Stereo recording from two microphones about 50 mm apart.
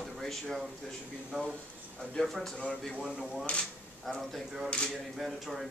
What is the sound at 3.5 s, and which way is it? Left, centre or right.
Speech, left.